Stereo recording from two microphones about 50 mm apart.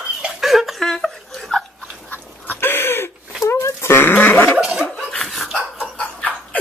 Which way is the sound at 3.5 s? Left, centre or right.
Left.